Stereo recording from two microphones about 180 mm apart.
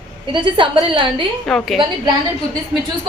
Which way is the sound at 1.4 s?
Centre (ahead or behind).